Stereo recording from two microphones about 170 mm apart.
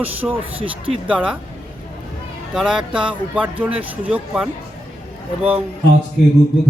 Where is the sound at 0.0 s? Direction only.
10° right (ahead or behind).